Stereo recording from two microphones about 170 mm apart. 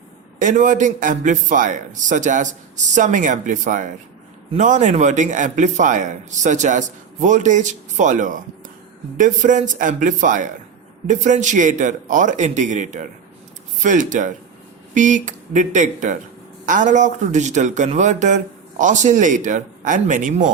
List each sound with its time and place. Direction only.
0.3 s a man's voice: 50° right (ahead or behind)